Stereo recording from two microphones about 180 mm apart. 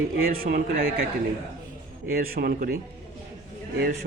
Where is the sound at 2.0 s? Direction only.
55° right (ahead or behind).